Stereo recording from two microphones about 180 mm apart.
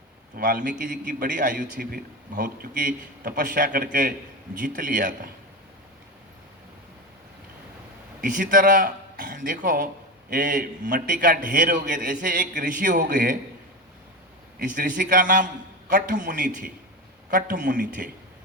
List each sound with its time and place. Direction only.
0.3 s a man's voice: 50° right (ahead or behind)
8.2 s a man's voice: 50° right (ahead or behind)
14.6 s a man's voice: 45° right (ahead or behind)